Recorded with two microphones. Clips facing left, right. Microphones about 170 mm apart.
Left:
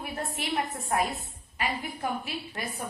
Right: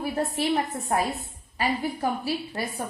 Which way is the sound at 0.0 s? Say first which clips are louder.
Right 8 dB; 35° right (ahead or behind).